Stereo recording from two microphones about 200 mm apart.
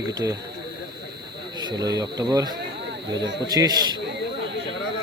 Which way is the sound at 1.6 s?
20° right (ahead or behind).